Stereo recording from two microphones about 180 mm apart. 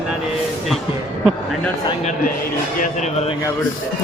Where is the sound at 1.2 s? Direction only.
Centre (ahead or behind).